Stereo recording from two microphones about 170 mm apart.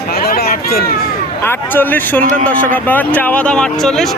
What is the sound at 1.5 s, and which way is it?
Speech, 10° left (ahead or behind).